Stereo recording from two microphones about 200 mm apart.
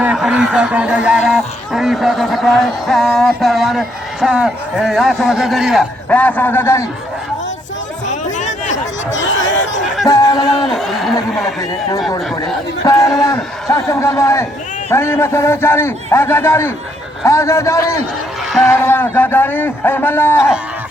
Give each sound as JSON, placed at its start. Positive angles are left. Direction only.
{"t": 0.0, "sound": "speech", "side_deg": -5}
{"t": 8.0, "sound": "chatter", "side_deg": 35}
{"t": 9.1, "sound": "chatter", "side_deg": 65}
{"t": 10.1, "sound": "speech", "side_deg": 20}
{"t": 10.7, "sound": "speech", "side_deg": 0}
{"t": 12.8, "sound": "a man's voice", "side_deg": 15}